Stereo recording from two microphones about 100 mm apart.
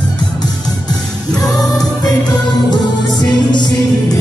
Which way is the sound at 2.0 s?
45° left (ahead or behind).